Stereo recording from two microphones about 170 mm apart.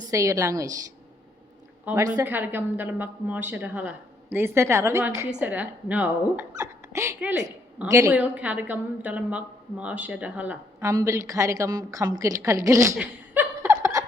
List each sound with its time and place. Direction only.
0.1 s a woman's voice: 20° right (ahead or behind)
1.8 s a woman's voice: 10° right (ahead or behind)
7.9 s a woman's voice: 20° right (ahead or behind)
8.1 s a woman's voice: 10° right (ahead or behind)
13.0 s chuckle: 10° right (ahead or behind)